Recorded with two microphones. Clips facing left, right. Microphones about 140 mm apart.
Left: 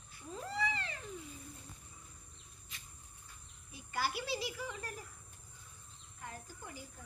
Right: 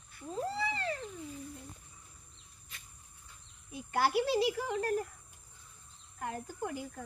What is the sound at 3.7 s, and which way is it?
Speech, 55° right (ahead or behind).